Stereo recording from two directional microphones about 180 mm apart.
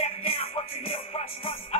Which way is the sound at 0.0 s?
35° left (ahead or behind).